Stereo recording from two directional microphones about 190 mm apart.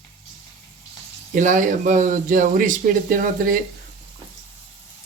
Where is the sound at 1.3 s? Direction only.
45° right (ahead or behind).